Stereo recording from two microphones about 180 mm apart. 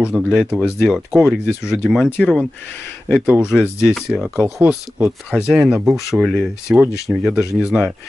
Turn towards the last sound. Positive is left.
turn(degrees=-5)  # may be behind; listen again after turning